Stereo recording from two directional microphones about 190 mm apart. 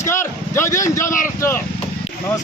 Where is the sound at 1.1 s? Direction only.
45° left (ahead or behind).